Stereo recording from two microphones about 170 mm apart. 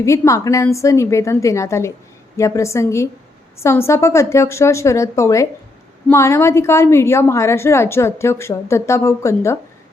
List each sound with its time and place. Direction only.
0.0 s a woman's voice: 20° left (ahead or behind)